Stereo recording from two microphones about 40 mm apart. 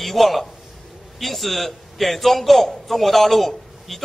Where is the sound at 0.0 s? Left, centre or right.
Centre.